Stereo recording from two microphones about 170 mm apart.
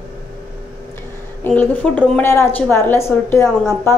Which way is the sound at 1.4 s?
10° left (ahead or behind).